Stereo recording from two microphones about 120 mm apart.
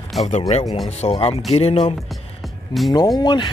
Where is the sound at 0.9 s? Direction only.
65° left (ahead or behind).